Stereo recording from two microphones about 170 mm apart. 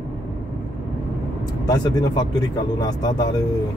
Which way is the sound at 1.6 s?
25° left (ahead or behind).